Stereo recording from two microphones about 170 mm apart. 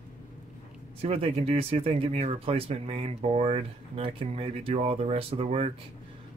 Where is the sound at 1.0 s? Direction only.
35° right (ahead or behind).